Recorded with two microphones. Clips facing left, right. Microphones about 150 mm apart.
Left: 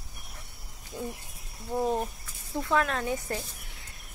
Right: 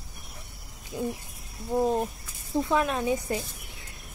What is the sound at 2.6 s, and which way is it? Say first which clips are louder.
Speech: right 2 dB; 15° right (ahead or behind).